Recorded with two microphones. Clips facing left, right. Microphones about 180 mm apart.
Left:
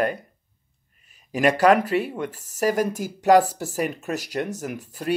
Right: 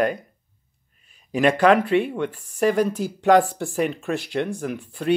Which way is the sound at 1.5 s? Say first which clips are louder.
Even; 40° left (ahead or behind).